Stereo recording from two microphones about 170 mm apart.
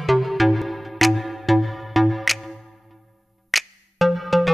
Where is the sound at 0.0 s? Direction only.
Centre (ahead or behind).